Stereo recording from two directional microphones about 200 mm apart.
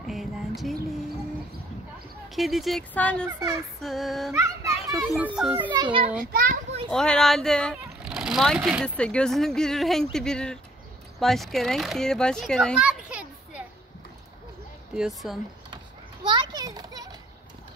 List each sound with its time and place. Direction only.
0.0 s music: centre (ahead or behind)
2.2 s speech: centre (ahead or behind)
3.3 s speech: 15° right (ahead or behind)
3.8 s speech: centre (ahead or behind)
5.7 s a child's voice: 25° right (ahead or behind)
6.1 s a child's voice: 45° right (ahead or behind)
6.9 s a child's voice: 5° left (ahead or behind)
15.0 s speech: centre (ahead or behind)
16.3 s children playing: 20° right (ahead or behind)